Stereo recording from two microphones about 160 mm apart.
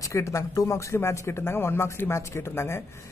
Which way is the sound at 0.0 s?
20° left (ahead or behind).